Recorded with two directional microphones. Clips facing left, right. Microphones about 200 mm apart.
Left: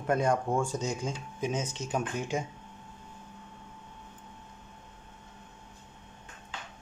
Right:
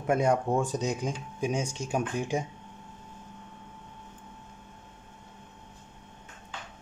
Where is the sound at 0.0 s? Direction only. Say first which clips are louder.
Right 2 dB; 20° right (ahead or behind).